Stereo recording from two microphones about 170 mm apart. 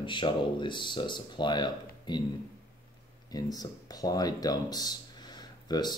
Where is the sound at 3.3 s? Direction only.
20° left (ahead or behind).